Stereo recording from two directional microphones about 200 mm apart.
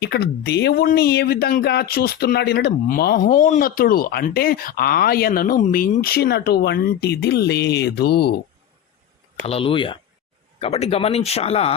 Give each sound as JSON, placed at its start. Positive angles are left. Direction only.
{"t": 0.0, "sound": "speech", "side_deg": 55}
{"t": 9.4, "sound": "speech", "side_deg": 30}